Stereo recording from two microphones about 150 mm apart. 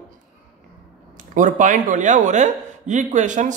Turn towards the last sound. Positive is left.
turn(degrees=-55)  # may be behind; listen again after turning